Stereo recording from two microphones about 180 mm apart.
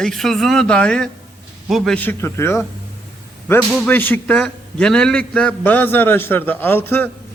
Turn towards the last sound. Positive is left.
turn(degrees=10)  # may be behind; listen again after turning